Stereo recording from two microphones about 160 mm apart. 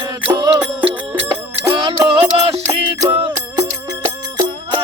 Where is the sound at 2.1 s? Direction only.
40° right (ahead or behind).